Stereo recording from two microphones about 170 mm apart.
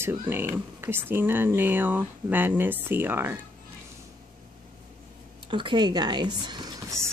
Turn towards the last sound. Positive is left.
turn(degrees=-25)  # may be behind; listen again after turning